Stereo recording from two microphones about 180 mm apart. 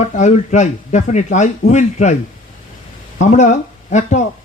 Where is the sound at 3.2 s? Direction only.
40° left (ahead or behind).